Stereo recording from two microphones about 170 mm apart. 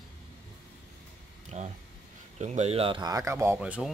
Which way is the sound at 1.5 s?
45° right (ahead or behind).